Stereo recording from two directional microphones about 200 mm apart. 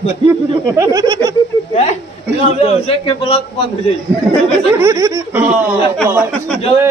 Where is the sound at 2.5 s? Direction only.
30° left (ahead or behind).